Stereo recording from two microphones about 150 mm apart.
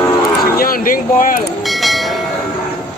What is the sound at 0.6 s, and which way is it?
Speech, 70° left (ahead or behind).